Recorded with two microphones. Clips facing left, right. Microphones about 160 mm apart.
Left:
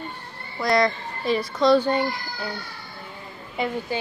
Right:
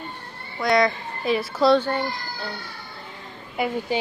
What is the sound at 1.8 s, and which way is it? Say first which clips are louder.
Speech: left 3 dB; 15° left (ahead or behind).